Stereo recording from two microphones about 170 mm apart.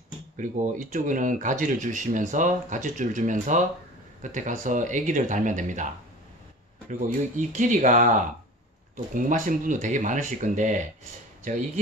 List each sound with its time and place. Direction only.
0.4 s speech: 50° right (ahead or behind)
6.9 s speech: 50° right (ahead or behind)